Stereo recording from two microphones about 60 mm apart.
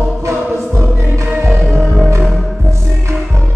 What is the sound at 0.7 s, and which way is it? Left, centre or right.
Music, right.